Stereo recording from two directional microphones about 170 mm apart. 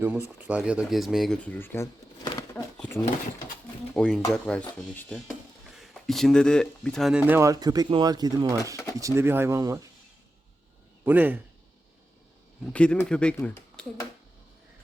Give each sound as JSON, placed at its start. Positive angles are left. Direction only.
{"t": 0.0, "sound": "speech", "side_deg": -10}
{"t": 8.7, "sound": "speech", "side_deg": 20}
{"t": 9.0, "sound": "speech", "side_deg": -15}
{"t": 11.0, "sound": "speech", "side_deg": -10}
{"t": 12.6, "sound": "speech", "side_deg": 5}
{"t": 13.8, "sound": "finger snapping", "side_deg": 5}